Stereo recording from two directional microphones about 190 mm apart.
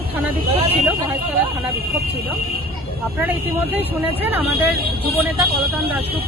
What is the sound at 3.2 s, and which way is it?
Speech, 10° right (ahead or behind).